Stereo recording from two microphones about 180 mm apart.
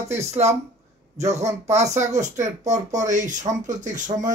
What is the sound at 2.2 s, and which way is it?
Speech, 40° right (ahead or behind).